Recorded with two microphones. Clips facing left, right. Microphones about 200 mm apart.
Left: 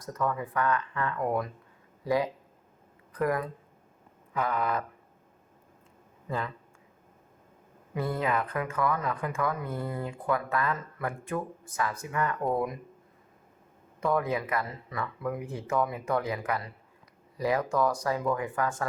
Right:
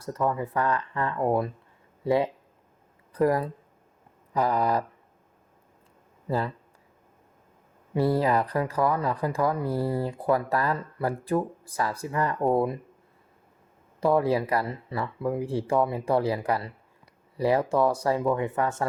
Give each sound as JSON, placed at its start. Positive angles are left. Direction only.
{"t": 0.0, "sound": "speech", "side_deg": -30}
{"t": 6.2, "sound": "speech", "side_deg": -35}
{"t": 7.9, "sound": "speech", "side_deg": -35}
{"t": 14.0, "sound": "speech", "side_deg": -30}